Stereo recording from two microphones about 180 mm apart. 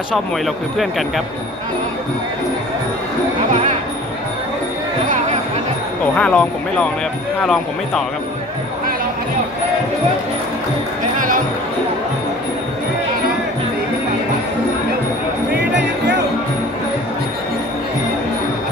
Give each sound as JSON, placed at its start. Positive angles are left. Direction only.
{"t": 0.7, "sound": "speech", "side_deg": 0}
{"t": 6.1, "sound": "speech", "side_deg": 5}
{"t": 11.1, "sound": "music", "side_deg": -50}
{"t": 15.7, "sound": "music", "side_deg": -75}